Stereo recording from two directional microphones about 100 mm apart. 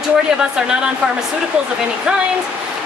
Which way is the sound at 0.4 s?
10° right (ahead or behind).